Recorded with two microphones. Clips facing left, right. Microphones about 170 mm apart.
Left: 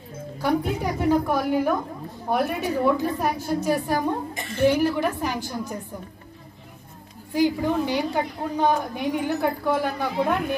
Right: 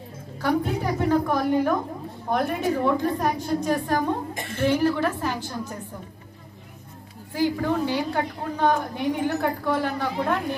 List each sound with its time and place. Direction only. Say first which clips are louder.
0.4 s a woman's voice: even; 10° left (ahead or behind)
4.3 s a woman's voice: right 1 dB; 50° right (ahead or behind)
4.6 s a woman's voice: left 1 dB; 10° left (ahead or behind)
7.3 s a woman's voice: left 2 dB; 15° left (ahead or behind)